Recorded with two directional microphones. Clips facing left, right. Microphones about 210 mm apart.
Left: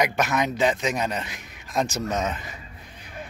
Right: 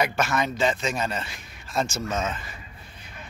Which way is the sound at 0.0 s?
15° left (ahead or behind).